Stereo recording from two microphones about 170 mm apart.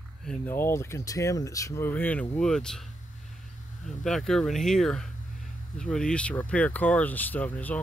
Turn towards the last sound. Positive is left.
turn(degrees=10)  # may be behind; listen again after turning